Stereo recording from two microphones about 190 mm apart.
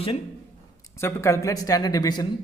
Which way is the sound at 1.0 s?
15° left (ahead or behind).